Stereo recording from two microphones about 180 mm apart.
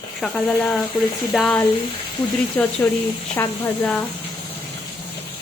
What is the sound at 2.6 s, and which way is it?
Speech, 10° left (ahead or behind).